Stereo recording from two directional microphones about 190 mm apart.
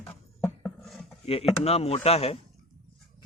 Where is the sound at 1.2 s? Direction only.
30° left (ahead or behind).